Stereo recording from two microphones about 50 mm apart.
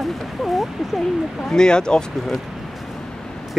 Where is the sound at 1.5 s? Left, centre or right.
Centre.